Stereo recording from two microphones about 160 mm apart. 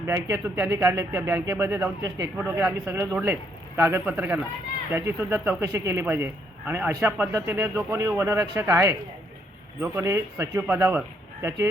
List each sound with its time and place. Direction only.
0.3 s a man's voice: 20° right (ahead or behind)